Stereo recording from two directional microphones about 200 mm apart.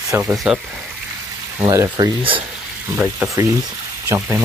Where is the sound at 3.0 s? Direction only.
5° right (ahead or behind).